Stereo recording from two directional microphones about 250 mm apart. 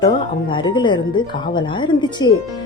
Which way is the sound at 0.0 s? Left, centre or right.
Centre.